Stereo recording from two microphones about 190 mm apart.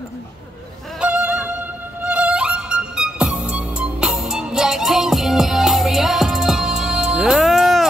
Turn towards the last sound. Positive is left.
turn(degrees=0)  # may be behind; listen again after turning